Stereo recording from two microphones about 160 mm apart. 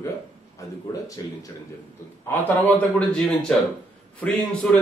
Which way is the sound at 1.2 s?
25° left (ahead or behind).